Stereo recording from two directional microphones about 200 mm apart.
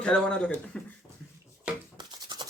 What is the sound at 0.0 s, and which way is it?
Speech, 5° left (ahead or behind).